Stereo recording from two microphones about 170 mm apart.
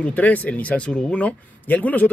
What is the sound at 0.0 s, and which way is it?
Speech, 10° left (ahead or behind).